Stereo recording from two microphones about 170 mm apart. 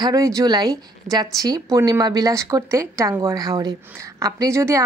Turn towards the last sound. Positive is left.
turn(degrees=-15)  # may be behind; listen again after turning